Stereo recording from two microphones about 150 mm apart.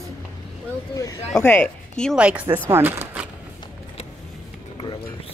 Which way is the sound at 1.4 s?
10° left (ahead or behind).